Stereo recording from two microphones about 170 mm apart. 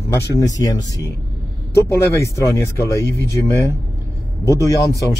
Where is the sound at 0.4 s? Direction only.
20° left (ahead or behind).